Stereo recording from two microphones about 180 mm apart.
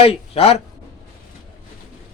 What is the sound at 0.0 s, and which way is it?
Speech, 35° left (ahead or behind).